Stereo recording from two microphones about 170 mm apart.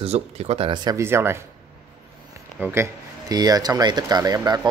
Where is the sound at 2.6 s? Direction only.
15° right (ahead or behind).